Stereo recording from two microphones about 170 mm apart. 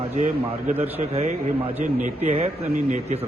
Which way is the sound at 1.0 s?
40° right (ahead or behind).